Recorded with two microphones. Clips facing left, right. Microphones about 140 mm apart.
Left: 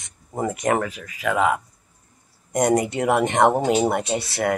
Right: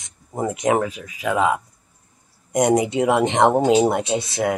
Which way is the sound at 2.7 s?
10° right (ahead or behind).